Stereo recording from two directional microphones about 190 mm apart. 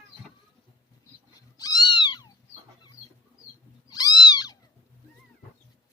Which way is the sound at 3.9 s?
20° left (ahead or behind).